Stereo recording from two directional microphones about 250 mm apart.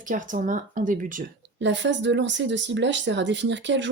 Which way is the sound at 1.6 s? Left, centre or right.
Right.